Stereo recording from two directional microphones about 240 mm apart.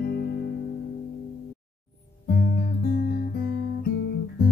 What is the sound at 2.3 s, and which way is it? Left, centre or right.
Guitar, left.